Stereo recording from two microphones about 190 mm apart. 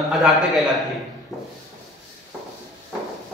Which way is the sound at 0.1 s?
Centre (ahead or behind).